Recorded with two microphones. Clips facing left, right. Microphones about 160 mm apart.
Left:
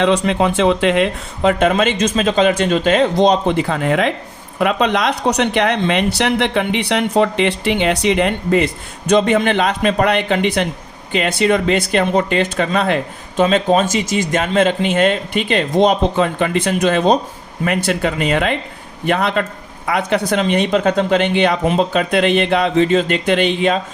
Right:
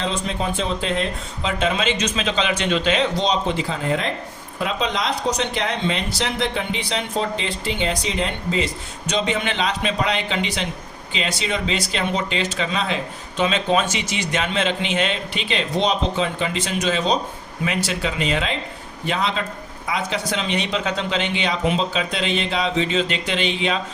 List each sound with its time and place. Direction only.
0.0 s speech: 70° left (ahead or behind); by 23.8 s 50° left (ahead or behind)